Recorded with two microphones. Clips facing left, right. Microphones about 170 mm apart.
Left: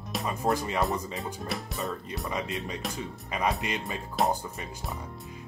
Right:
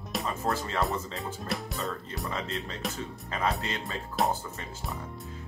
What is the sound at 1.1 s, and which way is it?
Speech, centre (ahead or behind).